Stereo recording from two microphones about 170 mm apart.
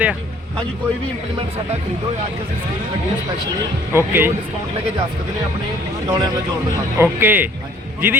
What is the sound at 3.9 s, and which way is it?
Speech, 10° right (ahead or behind).